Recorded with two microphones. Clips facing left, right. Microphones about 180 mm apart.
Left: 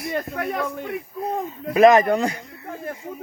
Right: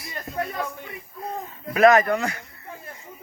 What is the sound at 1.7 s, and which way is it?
Speech, 20° left (ahead or behind).